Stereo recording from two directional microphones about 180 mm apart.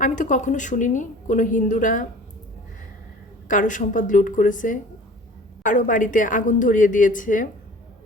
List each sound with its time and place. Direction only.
0.0 s a woman's voice: 45° left (ahead or behind)
3.5 s a woman's voice: 45° left (ahead or behind)